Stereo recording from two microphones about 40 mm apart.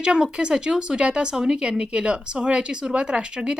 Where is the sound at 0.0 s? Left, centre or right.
Right.